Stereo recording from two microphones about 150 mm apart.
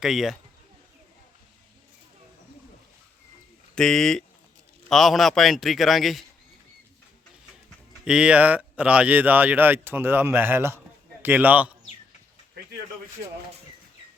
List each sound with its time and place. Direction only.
0.0 s a man's voice: centre (ahead or behind)
3.8 s a man's voice: 5° left (ahead or behind)
8.0 s a man's voice: 5° right (ahead or behind)